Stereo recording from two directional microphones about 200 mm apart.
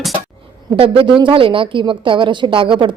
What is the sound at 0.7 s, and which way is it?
A woman's voice, 25° right (ahead or behind).